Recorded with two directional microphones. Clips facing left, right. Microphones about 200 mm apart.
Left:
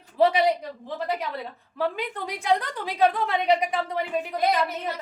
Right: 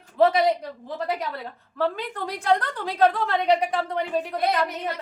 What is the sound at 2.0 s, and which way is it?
A woman's voice, 10° left (ahead or behind).